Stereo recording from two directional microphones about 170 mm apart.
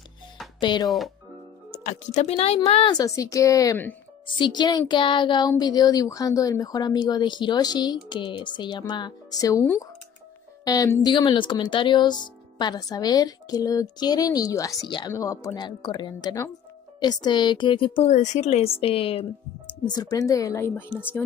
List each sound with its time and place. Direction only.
0.6 s speech: 25° left (ahead or behind)
0.8 s speech: centre (ahead or behind)
1.7 s speech: 45° left (ahead or behind); by 21.2 s 10° left (ahead or behind)